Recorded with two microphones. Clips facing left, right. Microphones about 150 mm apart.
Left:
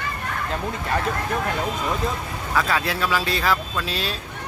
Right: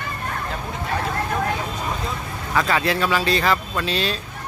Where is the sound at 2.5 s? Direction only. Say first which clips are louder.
Right 3 dB; centre (ahead or behind).